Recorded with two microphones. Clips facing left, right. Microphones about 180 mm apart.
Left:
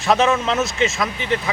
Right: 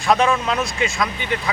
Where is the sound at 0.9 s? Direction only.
Centre (ahead or behind).